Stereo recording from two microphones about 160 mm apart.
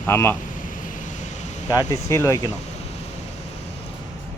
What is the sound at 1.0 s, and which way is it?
Vehicle, 50° left (ahead or behind).